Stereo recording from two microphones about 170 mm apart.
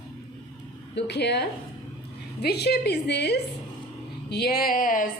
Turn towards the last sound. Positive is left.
turn(degrees=55)  # may be behind; listen again after turning